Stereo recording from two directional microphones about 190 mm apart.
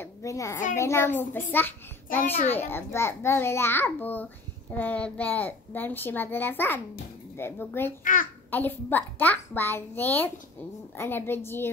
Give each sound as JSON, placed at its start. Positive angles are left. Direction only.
{"t": 0.0, "sound": "a sound", "side_deg": 15}
{"t": 0.7, "sound": "a child's voice", "side_deg": 15}
{"t": 8.0, "sound": "a child's voice", "side_deg": 45}
{"t": 8.5, "sound": "a child's voice", "side_deg": 10}